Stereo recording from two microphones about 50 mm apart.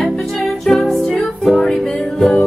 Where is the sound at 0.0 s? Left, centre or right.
Centre.